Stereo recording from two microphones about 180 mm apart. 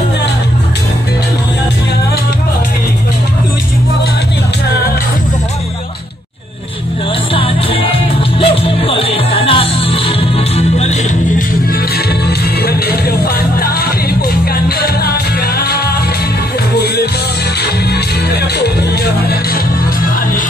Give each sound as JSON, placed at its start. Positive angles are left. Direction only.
{"t": 8.4, "sound": "music", "side_deg": 30}
{"t": 16.7, "sound": "music", "side_deg": 65}
{"t": 18.3, "sound": "music", "side_deg": 65}